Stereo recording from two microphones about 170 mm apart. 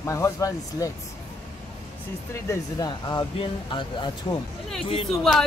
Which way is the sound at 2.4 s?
20° left (ahead or behind).